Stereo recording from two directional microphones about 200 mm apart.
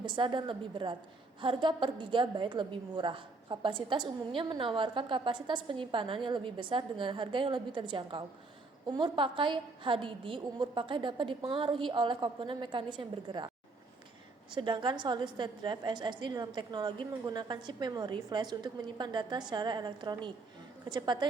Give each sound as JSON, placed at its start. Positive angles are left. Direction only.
{"t": 0.0, "sound": "a woman's voice", "side_deg": -25}
{"t": 14.5, "sound": "a woman's voice", "side_deg": -25}